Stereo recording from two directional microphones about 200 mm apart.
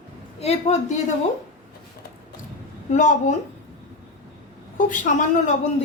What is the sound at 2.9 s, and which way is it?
Speech, 40° left (ahead or behind).